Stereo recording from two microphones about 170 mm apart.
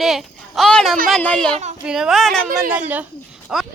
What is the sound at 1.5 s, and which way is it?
Speech, 45° right (ahead or behind).